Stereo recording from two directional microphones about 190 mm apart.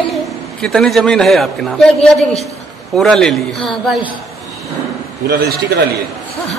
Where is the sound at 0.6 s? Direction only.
Centre (ahead or behind).